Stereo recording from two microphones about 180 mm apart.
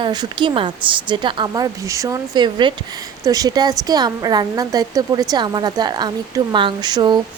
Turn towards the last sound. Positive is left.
turn(degrees=-25)  # may be behind; listen again after turning